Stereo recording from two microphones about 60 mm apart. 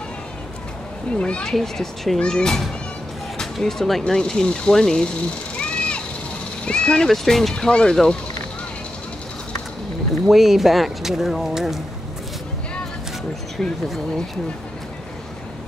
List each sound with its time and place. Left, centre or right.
1.1 s speech: centre
1.5 s speech: centre
5.6 s splash: centre
6.6 s speech: centre
7.1 s speech: centre
10.2 s speech: centre
13.8 s speech: centre